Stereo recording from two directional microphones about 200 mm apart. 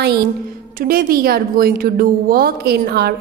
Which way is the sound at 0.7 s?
45° right (ahead or behind).